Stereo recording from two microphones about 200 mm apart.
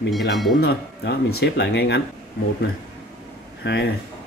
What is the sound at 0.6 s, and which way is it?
Speech, 50° left (ahead or behind).